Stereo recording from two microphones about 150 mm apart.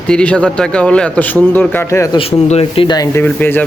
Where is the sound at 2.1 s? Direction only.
40° left (ahead or behind).